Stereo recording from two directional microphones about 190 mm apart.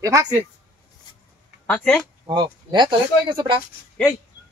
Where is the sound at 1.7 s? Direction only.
10° left (ahead or behind).